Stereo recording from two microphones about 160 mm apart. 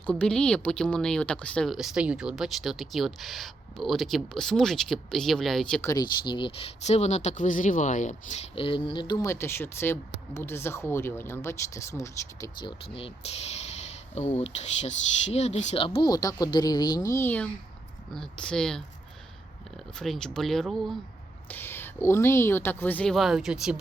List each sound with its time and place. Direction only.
0.0 s speech: 5° left (ahead or behind)
5.8 s speech: 20° left (ahead or behind)
16.0 s speech: 25° left (ahead or behind); by 18.8 s 5° left (ahead or behind)
20.0 s speech: 5° left (ahead or behind)
21.5 s speech: 15° left (ahead or behind); by 23.8 s 5° right (ahead or behind)